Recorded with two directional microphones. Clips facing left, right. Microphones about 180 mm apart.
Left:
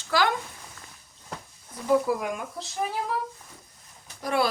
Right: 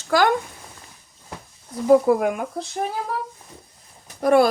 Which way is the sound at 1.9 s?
50° right (ahead or behind).